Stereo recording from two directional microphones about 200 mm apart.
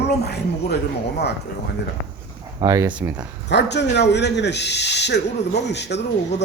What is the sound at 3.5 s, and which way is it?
Speech, 60° left (ahead or behind).